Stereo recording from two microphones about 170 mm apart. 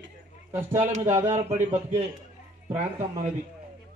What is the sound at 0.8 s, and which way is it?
A man's voice, 40° right (ahead or behind).